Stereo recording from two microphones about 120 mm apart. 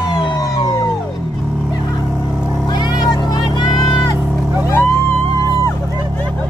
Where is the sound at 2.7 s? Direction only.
35° left (ahead or behind).